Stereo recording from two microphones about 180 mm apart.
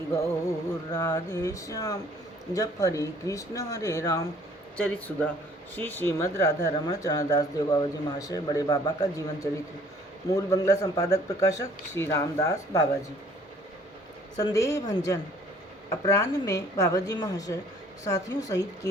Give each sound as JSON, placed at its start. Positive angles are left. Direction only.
{"t": 0.9, "sound": "a woman's voice", "side_deg": 20}
{"t": 4.8, "sound": "speech", "side_deg": 10}
{"t": 14.3, "sound": "a woman's voice", "side_deg": 20}